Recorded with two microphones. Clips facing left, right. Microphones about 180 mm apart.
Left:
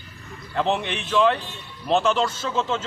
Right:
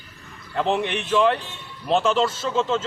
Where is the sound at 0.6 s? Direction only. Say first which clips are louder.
Right 1 dB; 5° right (ahead or behind).